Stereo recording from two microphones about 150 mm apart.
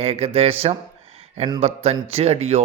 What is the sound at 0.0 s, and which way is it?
Speech, 40° right (ahead or behind).